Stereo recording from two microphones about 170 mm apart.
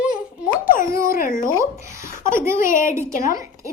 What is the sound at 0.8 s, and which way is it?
Dog, 15° right (ahead or behind).